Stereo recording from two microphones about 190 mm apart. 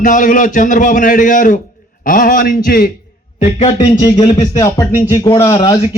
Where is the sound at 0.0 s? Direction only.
45° left (ahead or behind).